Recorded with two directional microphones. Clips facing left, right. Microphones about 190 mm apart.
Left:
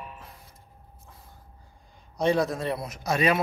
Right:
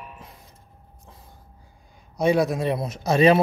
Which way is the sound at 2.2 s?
10° right (ahead or behind).